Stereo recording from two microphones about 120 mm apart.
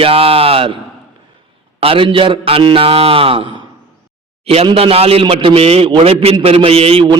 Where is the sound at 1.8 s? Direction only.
45° right (ahead or behind).